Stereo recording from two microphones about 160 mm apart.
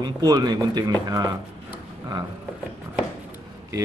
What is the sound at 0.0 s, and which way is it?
Speech, 25° right (ahead or behind).